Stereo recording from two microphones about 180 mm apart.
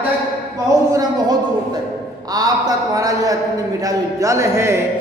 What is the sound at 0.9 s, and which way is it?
A man's voice, 20° right (ahead or behind).